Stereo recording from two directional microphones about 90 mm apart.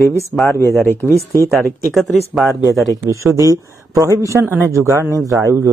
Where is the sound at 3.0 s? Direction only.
35° right (ahead or behind).